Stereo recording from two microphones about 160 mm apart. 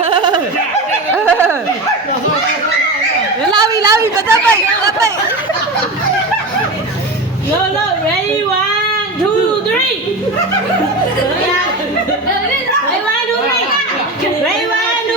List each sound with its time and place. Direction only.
0.0 s goat: 30° right (ahead or behind)
3.5 s chatter: 25° right (ahead or behind)